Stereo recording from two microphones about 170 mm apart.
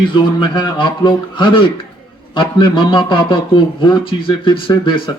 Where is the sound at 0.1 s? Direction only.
30° left (ahead or behind).